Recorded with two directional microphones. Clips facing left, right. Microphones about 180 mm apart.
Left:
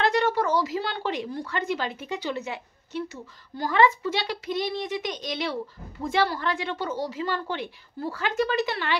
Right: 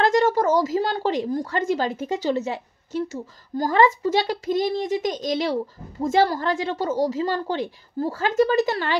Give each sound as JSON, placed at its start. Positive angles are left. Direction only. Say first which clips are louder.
{"t": 0.0, "sound": "speech", "louder": "right 5 dB", "side_deg": -40}